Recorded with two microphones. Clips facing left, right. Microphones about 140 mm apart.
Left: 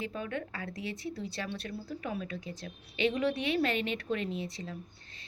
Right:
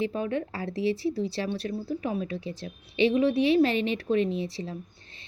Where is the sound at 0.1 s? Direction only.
30° right (ahead or behind).